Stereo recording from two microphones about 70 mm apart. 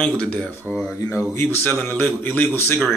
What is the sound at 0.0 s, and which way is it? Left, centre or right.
Speech, centre.